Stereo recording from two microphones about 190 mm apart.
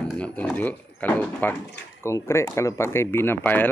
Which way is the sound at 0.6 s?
10° left (ahead or behind).